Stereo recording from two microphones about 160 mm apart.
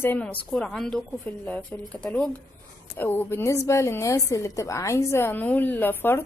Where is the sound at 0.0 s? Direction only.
10° left (ahead or behind).